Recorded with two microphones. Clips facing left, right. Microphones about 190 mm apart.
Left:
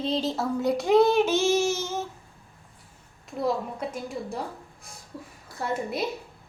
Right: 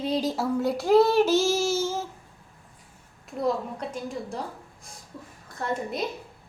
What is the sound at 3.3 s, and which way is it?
A child's voice, centre (ahead or behind).